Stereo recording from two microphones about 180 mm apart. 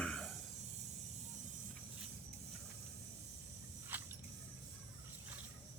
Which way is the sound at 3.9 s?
10° right (ahead or behind).